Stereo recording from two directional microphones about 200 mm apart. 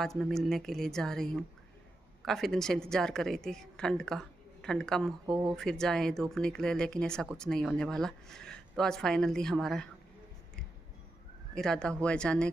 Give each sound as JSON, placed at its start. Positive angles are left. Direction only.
{"t": 0.0, "sound": "speech", "side_deg": 0}
{"t": 5.2, "sound": "speech", "side_deg": -15}
{"t": 5.6, "sound": "speech", "side_deg": 5}
{"t": 11.5, "sound": "speech", "side_deg": 5}